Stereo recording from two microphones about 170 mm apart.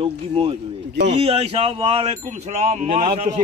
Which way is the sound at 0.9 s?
90° right.